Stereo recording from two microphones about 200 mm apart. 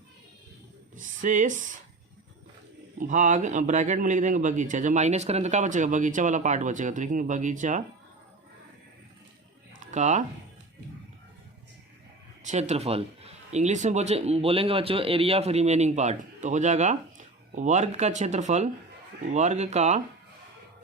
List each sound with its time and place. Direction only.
0.9 s speech: 40° right (ahead or behind)
3.0 s speech: 40° right (ahead or behind)
9.8 s speech: 35° right (ahead or behind)
12.4 s speech: 35° right (ahead or behind)